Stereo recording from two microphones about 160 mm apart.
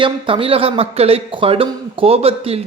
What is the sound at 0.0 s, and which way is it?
Speech, 35° right (ahead or behind).